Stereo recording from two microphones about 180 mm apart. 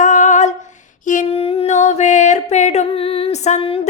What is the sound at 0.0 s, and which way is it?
Humming, 40° left (ahead or behind).